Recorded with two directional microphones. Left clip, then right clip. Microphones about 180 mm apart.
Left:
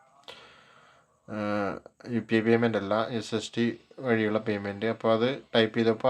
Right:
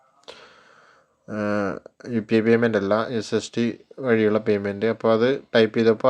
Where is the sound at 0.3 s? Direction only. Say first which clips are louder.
Right 4 dB; 25° right (ahead or behind).